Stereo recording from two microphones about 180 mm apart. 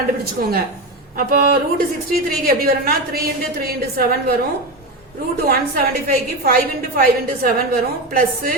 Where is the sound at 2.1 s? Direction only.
55° right (ahead or behind).